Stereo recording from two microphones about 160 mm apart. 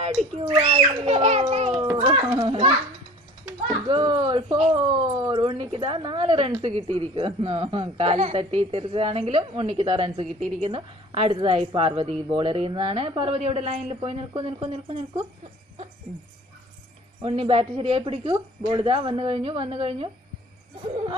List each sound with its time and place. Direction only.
0.0 s a child's voice: 40° right (ahead or behind)
3.8 s speech: 30° right (ahead or behind)
4.7 s speech: 25° right (ahead or behind)
17.2 s speech: 35° right (ahead or behind)